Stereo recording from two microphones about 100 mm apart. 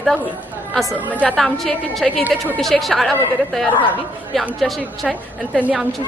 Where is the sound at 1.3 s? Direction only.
5° left (ahead or behind).